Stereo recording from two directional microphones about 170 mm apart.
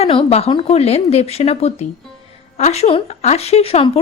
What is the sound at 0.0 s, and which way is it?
Speech, 35° left (ahead or behind).